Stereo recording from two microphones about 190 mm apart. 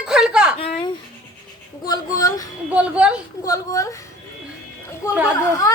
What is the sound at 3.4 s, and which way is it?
Speech, 15° left (ahead or behind).